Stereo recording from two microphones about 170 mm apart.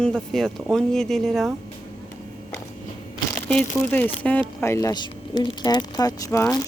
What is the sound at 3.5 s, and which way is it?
Speech, 10° left (ahead or behind).